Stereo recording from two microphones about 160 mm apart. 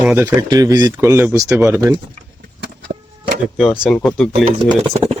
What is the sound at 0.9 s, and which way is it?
Speech, 15° right (ahead or behind).